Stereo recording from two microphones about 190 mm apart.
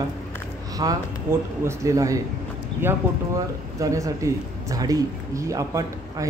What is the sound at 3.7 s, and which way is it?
Speech, 15° right (ahead or behind).